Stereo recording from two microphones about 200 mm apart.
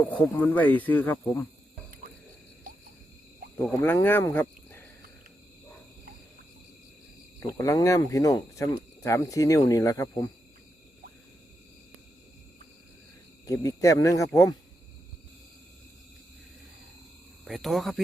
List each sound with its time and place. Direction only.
0.1 s speech: 10° left (ahead or behind)
3.6 s speech: 10° left (ahead or behind)
7.3 s speech: 15° left (ahead or behind)
13.4 s speech: 15° left (ahead or behind)
17.4 s speech: centre (ahead or behind)